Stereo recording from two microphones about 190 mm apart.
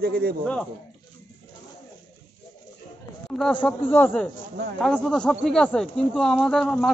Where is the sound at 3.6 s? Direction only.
10° left (ahead or behind).